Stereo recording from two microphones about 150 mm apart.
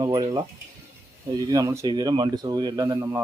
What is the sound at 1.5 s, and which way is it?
Speech, 25° right (ahead or behind).